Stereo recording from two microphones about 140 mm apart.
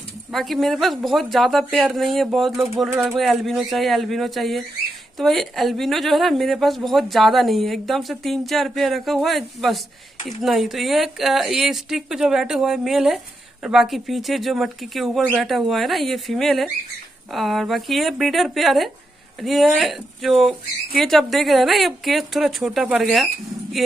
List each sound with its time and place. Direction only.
0.3 s speech: centre (ahead or behind)